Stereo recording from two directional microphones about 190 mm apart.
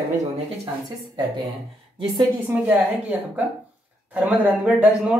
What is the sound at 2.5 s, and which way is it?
Speech, 5° right (ahead or behind).